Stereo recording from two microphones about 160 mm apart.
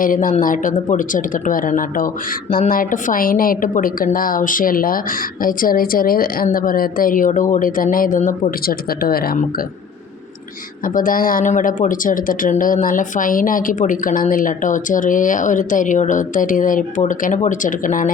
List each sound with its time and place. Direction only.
0.0 s a woman's voice: 60° left (ahead or behind)
10.8 s a woman's voice: 60° left (ahead or behind)